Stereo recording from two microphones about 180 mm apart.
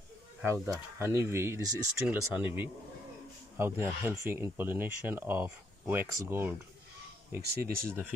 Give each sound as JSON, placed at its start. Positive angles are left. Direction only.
{"t": 0.4, "sound": "speech", "side_deg": -15}
{"t": 7.4, "sound": "speech", "side_deg": -60}